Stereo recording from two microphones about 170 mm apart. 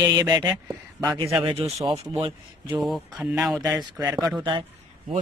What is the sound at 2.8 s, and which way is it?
Speech, centre (ahead or behind).